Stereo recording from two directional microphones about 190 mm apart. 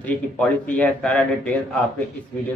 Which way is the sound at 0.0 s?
5° left (ahead or behind).